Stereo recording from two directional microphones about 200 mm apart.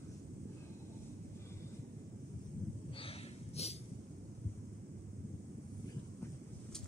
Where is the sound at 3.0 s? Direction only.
30° left (ahead or behind).